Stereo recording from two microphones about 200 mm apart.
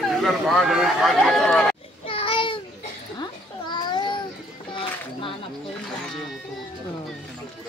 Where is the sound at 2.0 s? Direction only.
25° left (ahead or behind).